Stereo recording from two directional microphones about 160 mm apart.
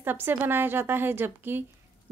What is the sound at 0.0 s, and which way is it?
A woman's voice, 10° right (ahead or behind).